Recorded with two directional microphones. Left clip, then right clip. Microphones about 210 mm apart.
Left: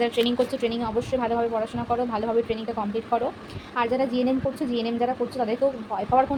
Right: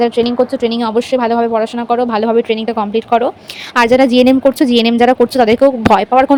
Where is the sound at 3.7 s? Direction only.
55° right (ahead or behind).